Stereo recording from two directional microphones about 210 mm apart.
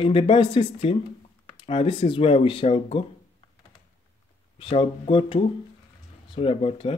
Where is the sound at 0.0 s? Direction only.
25° left (ahead or behind).